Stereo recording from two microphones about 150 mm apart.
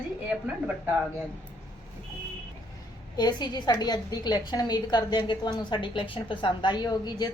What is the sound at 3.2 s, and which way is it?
A woman's voice, 30° left (ahead or behind).